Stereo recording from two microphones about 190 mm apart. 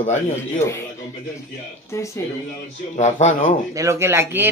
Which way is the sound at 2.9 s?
35° left (ahead or behind).